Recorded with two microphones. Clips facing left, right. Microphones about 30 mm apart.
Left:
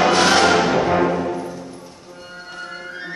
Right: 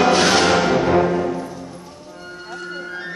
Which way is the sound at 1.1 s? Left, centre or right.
Centre.